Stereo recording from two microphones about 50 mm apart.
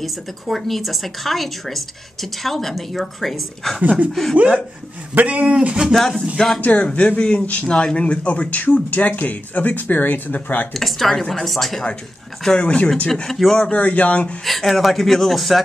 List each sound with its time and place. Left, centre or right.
0.0 s speech: centre
5.1 s speech: right
5.9 s speech: centre
6.6 s speech: left
10.7 s speech: centre
12.4 s speech: centre
13.3 s speech: centre
13.7 s speech: left
14.4 s speech: centre